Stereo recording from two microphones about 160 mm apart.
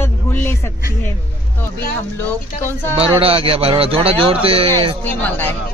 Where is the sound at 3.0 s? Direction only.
35° right (ahead or behind).